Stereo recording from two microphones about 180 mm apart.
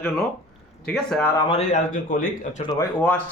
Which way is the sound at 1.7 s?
50° left (ahead or behind).